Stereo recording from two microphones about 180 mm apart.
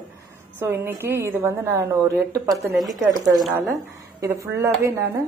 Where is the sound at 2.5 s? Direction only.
Centre (ahead or behind).